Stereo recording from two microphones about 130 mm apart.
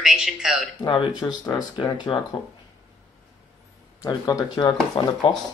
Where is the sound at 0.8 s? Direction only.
35° left (ahead or behind).